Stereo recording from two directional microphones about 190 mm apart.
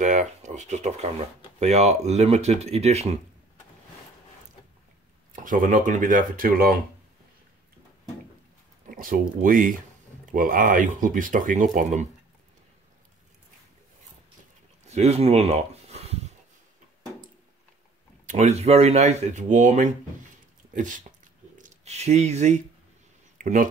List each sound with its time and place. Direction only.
0.0 s speech: 40° right (ahead or behind)
5.3 s speech: 45° right (ahead or behind)
8.8 s a sound: 45° right (ahead or behind)
9.4 s speech: 45° right (ahead or behind)
14.9 s speech: 35° right (ahead or behind)
18.2 s speech: 40° right (ahead or behind)
21.5 s speech: 40° right (ahead or behind)